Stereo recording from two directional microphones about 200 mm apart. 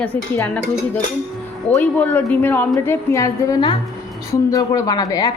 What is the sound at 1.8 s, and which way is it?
A woman's voice, 10° left (ahead or behind).